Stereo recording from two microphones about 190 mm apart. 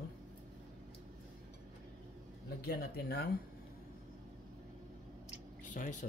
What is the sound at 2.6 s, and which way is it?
Speech, 55° left (ahead or behind).